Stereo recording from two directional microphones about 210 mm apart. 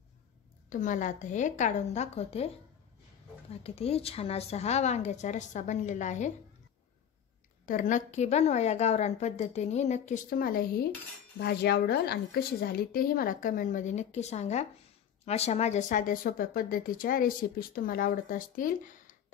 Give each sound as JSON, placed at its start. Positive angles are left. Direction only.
{"t": 0.7, "sound": "speech", "side_deg": 35}
{"t": 3.6, "sound": "speech", "side_deg": 30}
{"t": 7.6, "sound": "a woman's voice", "side_deg": 40}